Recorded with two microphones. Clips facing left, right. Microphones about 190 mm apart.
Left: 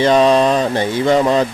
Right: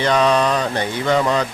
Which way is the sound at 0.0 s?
20° left (ahead or behind).